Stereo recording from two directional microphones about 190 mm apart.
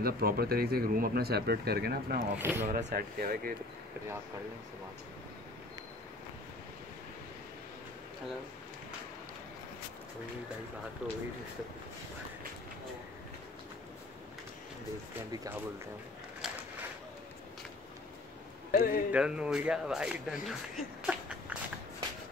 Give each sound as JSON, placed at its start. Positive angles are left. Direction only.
{"t": 0.0, "sound": "speech", "side_deg": -55}
{"t": 2.3, "sound": "speech", "side_deg": -10}
{"t": 2.7, "sound": "speech", "side_deg": -50}
{"t": 11.0, "sound": "speech", "side_deg": -5}
{"t": 18.7, "sound": "a man's voice", "side_deg": 50}
{"t": 19.1, "sound": "speech", "side_deg": -5}
{"t": 20.4, "sound": "a sound", "side_deg": 0}